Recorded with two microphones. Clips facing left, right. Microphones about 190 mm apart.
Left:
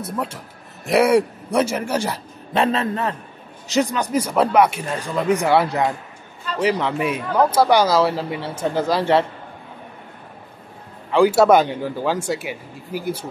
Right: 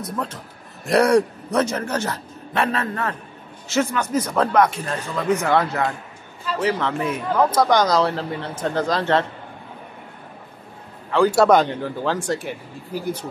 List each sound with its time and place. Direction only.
0.0 s speech: 10° left (ahead or behind)
11.1 s speech: 10° left (ahead or behind)